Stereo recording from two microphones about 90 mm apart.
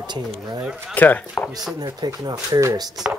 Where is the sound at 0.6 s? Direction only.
10° right (ahead or behind).